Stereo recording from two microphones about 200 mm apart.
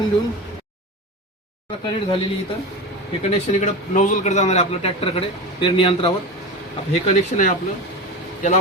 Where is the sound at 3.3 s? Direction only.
35° left (ahead or behind).